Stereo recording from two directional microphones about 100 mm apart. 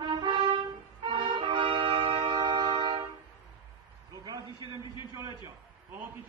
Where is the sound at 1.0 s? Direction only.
55° right (ahead or behind).